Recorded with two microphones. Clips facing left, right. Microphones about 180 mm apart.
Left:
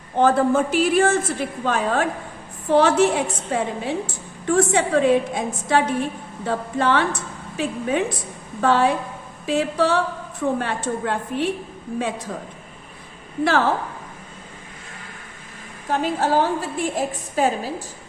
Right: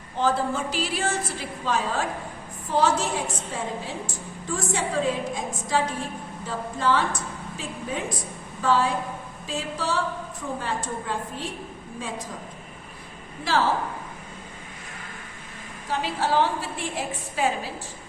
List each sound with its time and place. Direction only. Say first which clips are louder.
0.2 s a woman's voice: left 7 dB; 55° left (ahead or behind)
13.4 s speech: left 5 dB; 55° left (ahead or behind)
15.9 s a woman's voice: left 5 dB; 50° left (ahead or behind)